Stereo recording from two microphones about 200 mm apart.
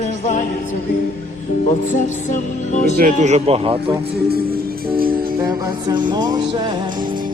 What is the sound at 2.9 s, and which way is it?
Speech, 40° right (ahead or behind).